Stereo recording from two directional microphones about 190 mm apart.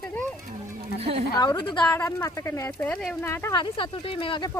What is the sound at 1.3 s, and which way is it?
Speech, 20° left (ahead or behind).